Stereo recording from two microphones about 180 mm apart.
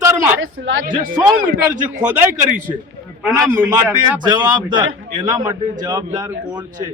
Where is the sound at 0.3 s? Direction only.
90° right.